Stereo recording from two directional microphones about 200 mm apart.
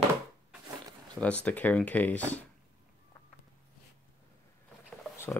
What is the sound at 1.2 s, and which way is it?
Speech, 5° left (ahead or behind).